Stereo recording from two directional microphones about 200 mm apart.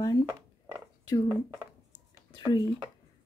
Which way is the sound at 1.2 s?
15° right (ahead or behind).